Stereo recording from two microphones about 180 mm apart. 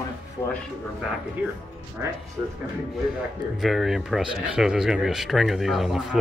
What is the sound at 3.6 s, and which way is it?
Speech, centre (ahead or behind).